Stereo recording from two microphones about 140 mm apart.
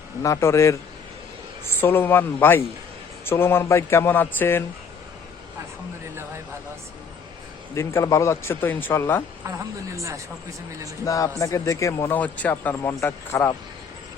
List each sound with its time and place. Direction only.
0.2 s a man's voice: 20° left (ahead or behind)
7.8 s a man's voice: 20° left (ahead or behind)
9.5 s speech: 20° right (ahead or behind)
11.0 s a man's voice: 25° left (ahead or behind)